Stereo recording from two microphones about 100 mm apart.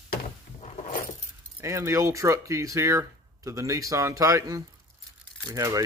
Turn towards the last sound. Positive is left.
turn(degrees=-35)  # may be behind; listen again after turning